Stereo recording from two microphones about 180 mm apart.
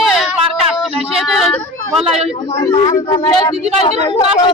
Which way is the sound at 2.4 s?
35° left (ahead or behind).